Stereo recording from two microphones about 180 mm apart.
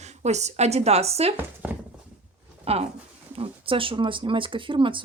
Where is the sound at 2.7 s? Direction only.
35° right (ahead or behind).